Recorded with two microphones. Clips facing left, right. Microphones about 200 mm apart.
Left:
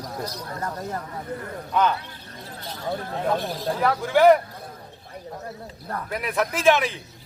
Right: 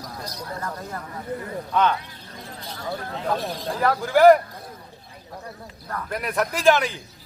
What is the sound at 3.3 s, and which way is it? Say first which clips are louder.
Speech: left 1 dB; centre (ahead or behind).